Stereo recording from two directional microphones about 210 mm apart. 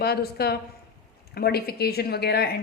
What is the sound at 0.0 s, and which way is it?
A woman's voice, 50° left (ahead or behind).